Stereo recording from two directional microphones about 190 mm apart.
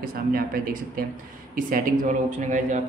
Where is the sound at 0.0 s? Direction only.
50° right (ahead or behind).